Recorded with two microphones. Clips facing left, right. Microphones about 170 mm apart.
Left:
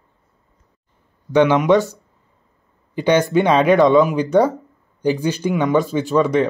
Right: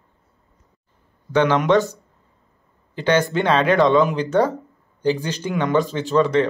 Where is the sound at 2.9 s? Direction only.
15° left (ahead or behind).